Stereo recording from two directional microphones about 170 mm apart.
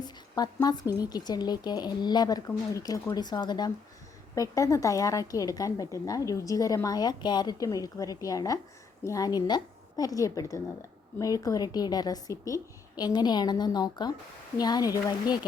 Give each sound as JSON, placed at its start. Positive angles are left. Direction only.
{"t": 0.3, "sound": "a woman's voice", "side_deg": 25}